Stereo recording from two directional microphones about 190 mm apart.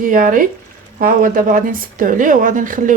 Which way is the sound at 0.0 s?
45° right (ahead or behind).